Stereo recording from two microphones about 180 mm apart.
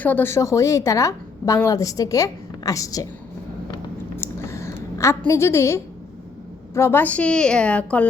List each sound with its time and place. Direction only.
0.0 s a woman's voice: 10° left (ahead or behind)
4.2 s a sound: 15° left (ahead or behind)
6.7 s a woman's voice: 15° left (ahead or behind)